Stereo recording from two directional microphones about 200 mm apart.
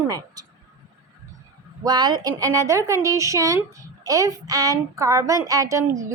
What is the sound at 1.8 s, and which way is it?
A woman's voice, 20° right (ahead or behind).